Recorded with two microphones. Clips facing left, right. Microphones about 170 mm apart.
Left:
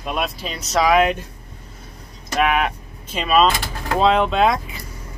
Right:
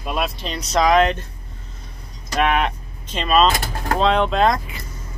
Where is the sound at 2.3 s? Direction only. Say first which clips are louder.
Even; 5° left (ahead or behind).